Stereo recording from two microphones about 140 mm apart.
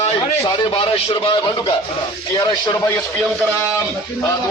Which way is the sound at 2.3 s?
25° left (ahead or behind).